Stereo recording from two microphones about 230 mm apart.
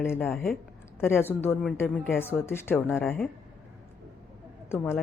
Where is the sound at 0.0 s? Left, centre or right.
Centre.